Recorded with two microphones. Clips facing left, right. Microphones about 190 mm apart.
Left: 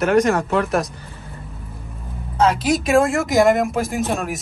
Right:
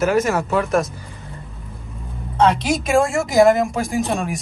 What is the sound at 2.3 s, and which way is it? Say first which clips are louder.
Speech: even; centre (ahead or behind).